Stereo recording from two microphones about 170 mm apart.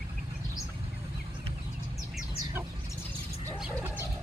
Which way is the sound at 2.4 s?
15° right (ahead or behind).